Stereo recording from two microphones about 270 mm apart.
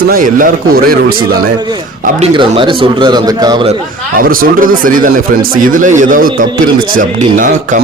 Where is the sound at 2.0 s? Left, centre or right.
Right.